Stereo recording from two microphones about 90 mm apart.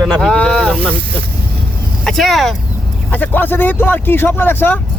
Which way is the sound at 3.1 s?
20° left (ahead or behind).